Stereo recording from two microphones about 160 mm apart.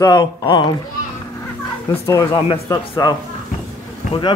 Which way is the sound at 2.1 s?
20° left (ahead or behind).